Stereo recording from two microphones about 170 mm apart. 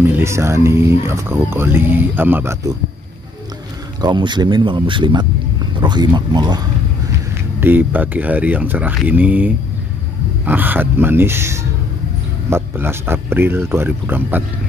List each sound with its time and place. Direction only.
0.0 s speech: 15° right (ahead or behind)
4.0 s speech: 25° right (ahead or behind)
7.6 s speech: 10° right (ahead or behind)